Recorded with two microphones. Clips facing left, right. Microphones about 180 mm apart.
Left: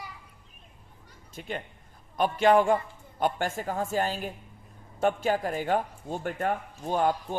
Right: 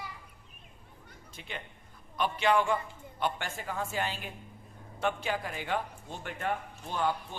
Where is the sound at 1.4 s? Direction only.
45° left (ahead or behind).